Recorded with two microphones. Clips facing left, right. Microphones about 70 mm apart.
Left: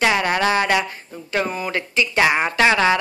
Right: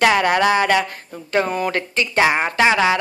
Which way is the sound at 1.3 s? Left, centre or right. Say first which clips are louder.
Right 3 dB; right.